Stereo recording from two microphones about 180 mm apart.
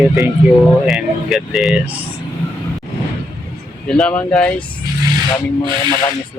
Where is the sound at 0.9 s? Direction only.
Centre (ahead or behind).